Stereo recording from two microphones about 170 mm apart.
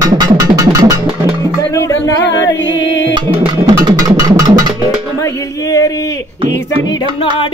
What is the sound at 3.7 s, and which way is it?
Music, 25° right (ahead or behind).